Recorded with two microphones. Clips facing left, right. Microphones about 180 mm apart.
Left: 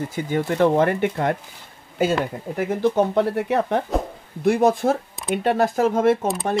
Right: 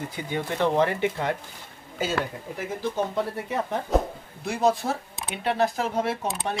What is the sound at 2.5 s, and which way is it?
Speech, 60° left (ahead or behind).